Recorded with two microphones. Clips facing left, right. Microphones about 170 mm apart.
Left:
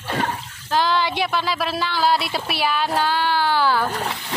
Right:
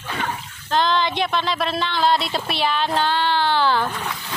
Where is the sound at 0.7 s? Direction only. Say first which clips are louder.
Even; 10° left (ahead or behind).